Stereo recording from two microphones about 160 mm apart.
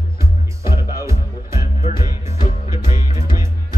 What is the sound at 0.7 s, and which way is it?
Music, 15° right (ahead or behind).